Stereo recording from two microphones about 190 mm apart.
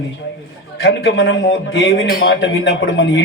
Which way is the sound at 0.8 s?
70° left (ahead or behind).